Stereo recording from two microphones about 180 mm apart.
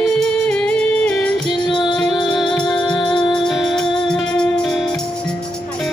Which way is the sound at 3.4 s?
Centre (ahead or behind).